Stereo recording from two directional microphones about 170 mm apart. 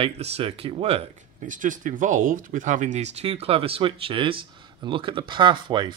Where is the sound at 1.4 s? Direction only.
50° right (ahead or behind).